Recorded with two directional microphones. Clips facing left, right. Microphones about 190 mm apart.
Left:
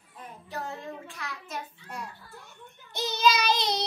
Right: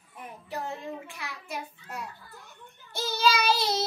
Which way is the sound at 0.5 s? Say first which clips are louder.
Right 2 dB; 15° right (ahead or behind).